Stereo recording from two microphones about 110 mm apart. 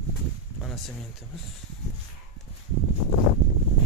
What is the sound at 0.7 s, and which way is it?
Speech, centre (ahead or behind).